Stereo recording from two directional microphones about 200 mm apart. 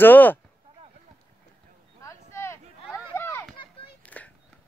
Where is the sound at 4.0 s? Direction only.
5° left (ahead or behind).